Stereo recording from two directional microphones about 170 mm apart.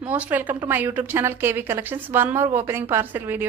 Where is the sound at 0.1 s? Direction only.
10° right (ahead or behind).